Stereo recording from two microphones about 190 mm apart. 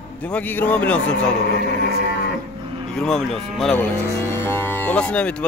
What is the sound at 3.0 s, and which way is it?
Speech, centre (ahead or behind).